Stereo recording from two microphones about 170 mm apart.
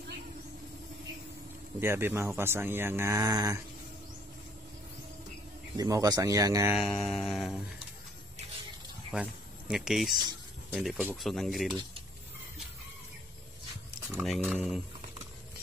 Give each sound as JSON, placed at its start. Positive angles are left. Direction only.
{"t": 1.8, "sound": "speech", "side_deg": -15}
{"t": 5.8, "sound": "speech", "side_deg": -20}
{"t": 6.7, "sound": "speech", "side_deg": 0}
{"t": 9.1, "sound": "speech", "side_deg": -5}
{"t": 14.2, "sound": "speech", "side_deg": 0}